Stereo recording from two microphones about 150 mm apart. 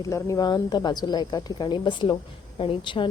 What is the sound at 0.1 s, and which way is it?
Speech, 20° left (ahead or behind).